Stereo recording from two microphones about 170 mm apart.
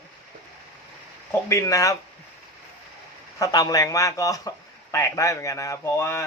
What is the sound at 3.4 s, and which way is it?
A man's voice, 20° left (ahead or behind).